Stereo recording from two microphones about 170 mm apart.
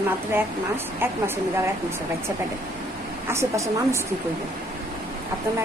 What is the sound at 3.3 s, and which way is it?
Speech, 15° right (ahead or behind).